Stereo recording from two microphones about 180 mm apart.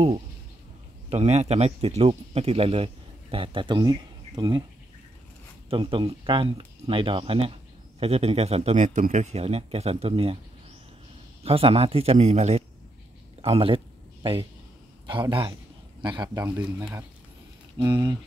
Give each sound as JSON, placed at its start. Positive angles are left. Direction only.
{"t": 1.1, "sound": "speech", "side_deg": -35}
{"t": 5.7, "sound": "speech", "side_deg": -30}
{"t": 11.4, "sound": "a man's voice", "side_deg": -30}
{"t": 15.0, "sound": "speech", "side_deg": -25}
{"t": 16.4, "sound": "speech", "side_deg": -15}
{"t": 17.7, "sound": "speech", "side_deg": -25}